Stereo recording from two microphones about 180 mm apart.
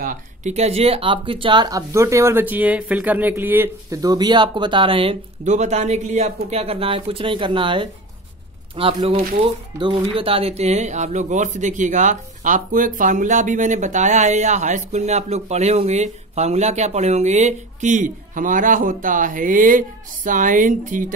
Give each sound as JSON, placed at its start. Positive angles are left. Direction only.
{"t": 0.0, "sound": "a woman's voice", "side_deg": -45}